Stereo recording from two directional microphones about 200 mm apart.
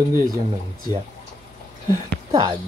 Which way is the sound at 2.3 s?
25° right (ahead or behind).